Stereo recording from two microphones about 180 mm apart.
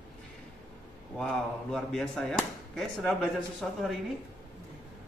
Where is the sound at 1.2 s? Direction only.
5° left (ahead or behind).